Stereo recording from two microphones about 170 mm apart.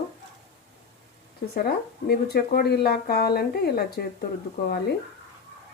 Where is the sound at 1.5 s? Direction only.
65° left (ahead or behind).